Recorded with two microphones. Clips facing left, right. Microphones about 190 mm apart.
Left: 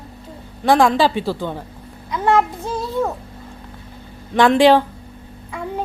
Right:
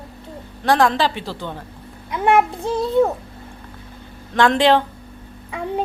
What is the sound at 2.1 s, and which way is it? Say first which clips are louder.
Speech: right 1 dB; 15° right (ahead or behind).